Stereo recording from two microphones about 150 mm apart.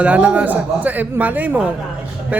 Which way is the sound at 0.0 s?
10° right (ahead or behind).